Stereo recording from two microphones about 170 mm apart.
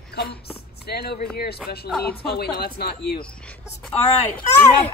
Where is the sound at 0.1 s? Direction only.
70° left (ahead or behind).